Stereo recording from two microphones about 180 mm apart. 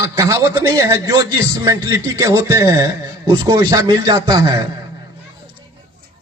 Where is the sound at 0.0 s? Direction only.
15° right (ahead or behind).